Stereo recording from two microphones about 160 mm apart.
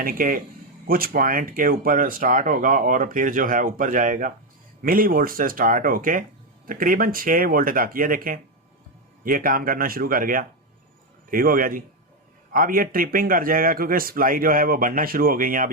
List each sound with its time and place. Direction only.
0.0 s speech: 60° right (ahead or behind)